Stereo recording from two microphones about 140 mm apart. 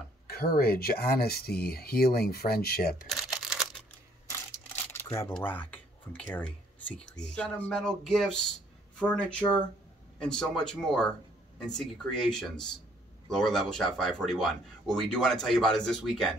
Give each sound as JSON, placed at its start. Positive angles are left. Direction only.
{"t": 0.3, "sound": "speech", "side_deg": 90}
{"t": 3.1, "sound": "camera", "side_deg": 0}
{"t": 4.5, "sound": "a sound", "side_deg": 20}
{"t": 5.3, "sound": "speech", "side_deg": 10}